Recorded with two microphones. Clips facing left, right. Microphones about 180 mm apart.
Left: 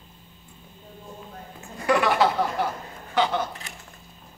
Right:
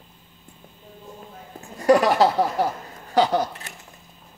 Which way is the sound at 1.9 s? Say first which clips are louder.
Right 5 dB; 40° right (ahead or behind).